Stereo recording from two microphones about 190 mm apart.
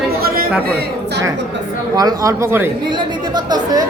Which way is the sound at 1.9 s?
20° right (ahead or behind).